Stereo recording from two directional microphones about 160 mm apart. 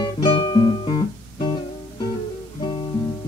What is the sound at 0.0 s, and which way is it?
Guitar, 25° left (ahead or behind).